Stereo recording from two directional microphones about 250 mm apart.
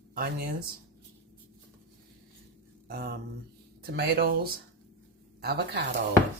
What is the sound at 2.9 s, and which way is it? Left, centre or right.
Speech, right.